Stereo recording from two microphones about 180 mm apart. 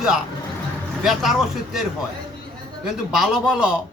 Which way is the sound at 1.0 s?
Centre (ahead or behind).